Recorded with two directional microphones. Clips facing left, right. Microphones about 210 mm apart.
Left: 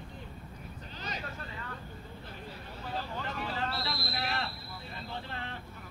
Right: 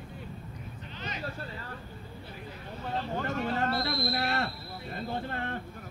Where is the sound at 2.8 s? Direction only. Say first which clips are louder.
Right 5 dB; 45° right (ahead or behind).